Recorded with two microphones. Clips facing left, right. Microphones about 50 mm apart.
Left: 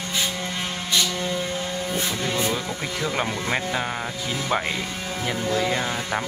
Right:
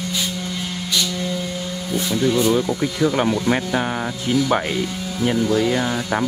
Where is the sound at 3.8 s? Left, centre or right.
Centre.